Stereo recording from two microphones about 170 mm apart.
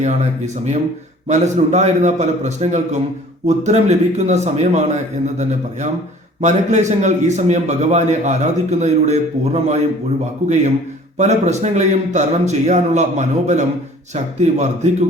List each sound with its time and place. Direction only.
0.0 s a man's voice: 45° right (ahead or behind)
11.2 s a man's voice: 40° right (ahead or behind)